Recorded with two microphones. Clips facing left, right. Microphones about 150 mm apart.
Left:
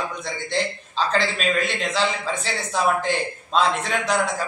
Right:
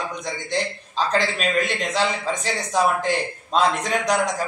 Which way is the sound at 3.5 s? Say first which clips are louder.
Right 1 dB; 15° right (ahead or behind).